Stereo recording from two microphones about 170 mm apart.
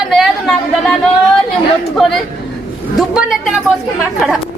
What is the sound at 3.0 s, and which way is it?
Speech, 5° right (ahead or behind).